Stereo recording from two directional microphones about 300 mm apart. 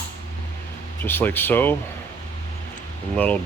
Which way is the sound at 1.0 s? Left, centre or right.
Centre.